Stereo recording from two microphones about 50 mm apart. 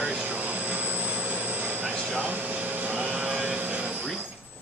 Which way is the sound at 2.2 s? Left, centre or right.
Right.